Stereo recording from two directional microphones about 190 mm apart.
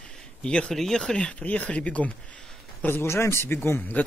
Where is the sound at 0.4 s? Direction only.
5° left (ahead or behind).